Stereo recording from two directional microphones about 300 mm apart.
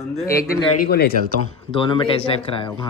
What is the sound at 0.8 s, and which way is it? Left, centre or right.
Speech, left.